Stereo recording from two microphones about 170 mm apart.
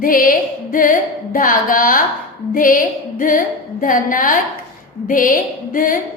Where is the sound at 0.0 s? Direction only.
55° left (ahead or behind).